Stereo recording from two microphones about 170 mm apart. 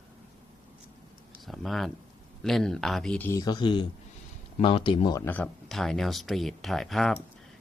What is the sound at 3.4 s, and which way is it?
Speech, 25° left (ahead or behind).